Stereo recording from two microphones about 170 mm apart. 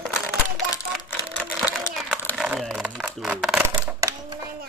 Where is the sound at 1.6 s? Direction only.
10° right (ahead or behind).